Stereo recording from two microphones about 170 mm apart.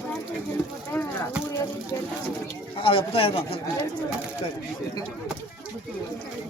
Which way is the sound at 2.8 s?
35° left (ahead or behind).